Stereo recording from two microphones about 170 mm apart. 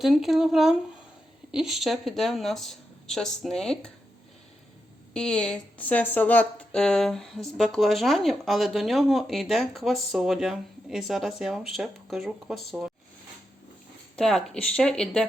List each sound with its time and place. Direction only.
0.0 s a woman's voice: centre (ahead or behind)
5.1 s a woman's voice: 5° left (ahead or behind)
14.2 s a woman's voice: centre (ahead or behind)